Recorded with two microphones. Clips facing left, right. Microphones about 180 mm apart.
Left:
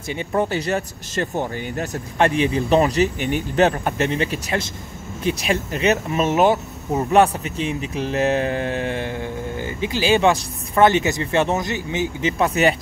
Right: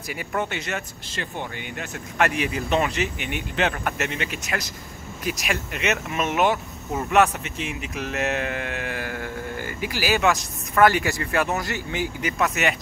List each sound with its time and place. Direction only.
0.1 s speech: 30° left (ahead or behind)